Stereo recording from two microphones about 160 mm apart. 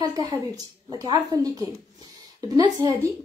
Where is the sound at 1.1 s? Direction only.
25° right (ahead or behind).